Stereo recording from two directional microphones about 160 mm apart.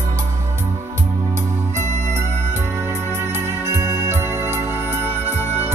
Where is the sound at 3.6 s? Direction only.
20° right (ahead or behind).